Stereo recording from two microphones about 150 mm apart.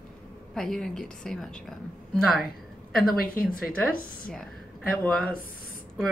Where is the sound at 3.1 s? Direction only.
75° left (ahead or behind).